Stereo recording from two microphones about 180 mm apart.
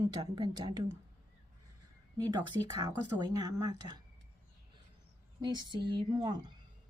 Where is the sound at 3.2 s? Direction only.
20° right (ahead or behind).